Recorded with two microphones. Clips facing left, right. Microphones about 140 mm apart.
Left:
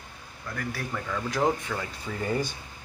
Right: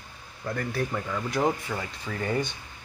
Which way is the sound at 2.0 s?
5° left (ahead or behind).